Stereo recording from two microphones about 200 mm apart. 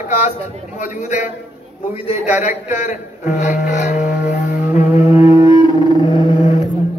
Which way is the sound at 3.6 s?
35° left (ahead or behind).